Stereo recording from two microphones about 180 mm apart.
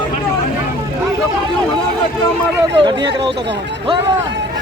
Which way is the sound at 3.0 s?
30° right (ahead or behind).